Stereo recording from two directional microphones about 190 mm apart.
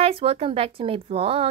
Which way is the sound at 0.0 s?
30° right (ahead or behind).